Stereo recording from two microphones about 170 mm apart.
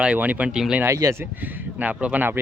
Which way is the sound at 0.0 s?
10° right (ahead or behind).